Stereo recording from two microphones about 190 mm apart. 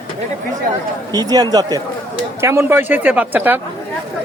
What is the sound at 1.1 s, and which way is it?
Speech, 20° right (ahead or behind).